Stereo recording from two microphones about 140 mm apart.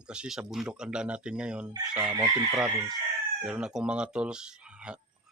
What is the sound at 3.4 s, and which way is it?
Speech, 5° right (ahead or behind).